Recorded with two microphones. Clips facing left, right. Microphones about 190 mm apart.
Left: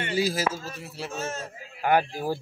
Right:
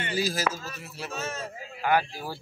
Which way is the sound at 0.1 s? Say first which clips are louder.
Left 2 dB; 25° left (ahead or behind).